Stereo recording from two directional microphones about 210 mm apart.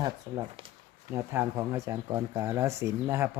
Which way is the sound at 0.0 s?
20° right (ahead or behind).